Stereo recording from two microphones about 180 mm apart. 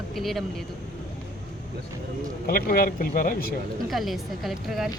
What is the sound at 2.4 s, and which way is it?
Speech, 55° left (ahead or behind).